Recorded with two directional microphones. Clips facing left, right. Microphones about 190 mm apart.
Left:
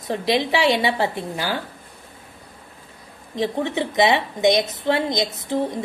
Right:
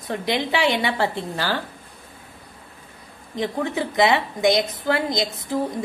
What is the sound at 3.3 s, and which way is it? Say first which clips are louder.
A woman's voice: left 2 dB; 25° left (ahead or behind).